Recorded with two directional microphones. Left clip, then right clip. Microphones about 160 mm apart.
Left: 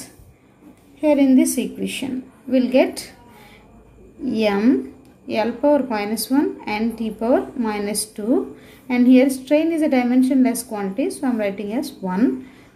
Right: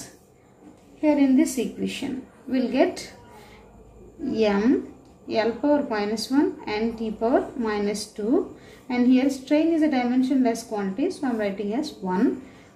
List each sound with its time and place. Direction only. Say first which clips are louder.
1.0 s a woman's voice: left 4 dB; 40° left (ahead or behind)
4.3 s a woman's voice: left 3 dB; 40° left (ahead or behind)